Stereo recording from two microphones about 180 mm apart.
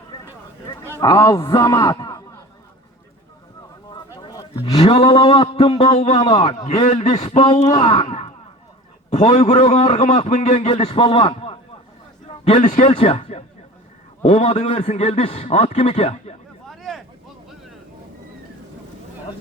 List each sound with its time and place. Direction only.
1.0 s a man's voice: 15° left (ahead or behind)
3.8 s a sound: 20° left (ahead or behind)
4.8 s a man's voice: 35° left (ahead or behind)
5.0 s a man's voice: 20° left (ahead or behind)
12.5 s a man's voice: 45° left (ahead or behind)
16.6 s a sound: centre (ahead or behind)